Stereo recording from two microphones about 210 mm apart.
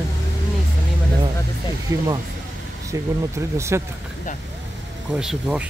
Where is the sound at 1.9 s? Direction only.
15° right (ahead or behind).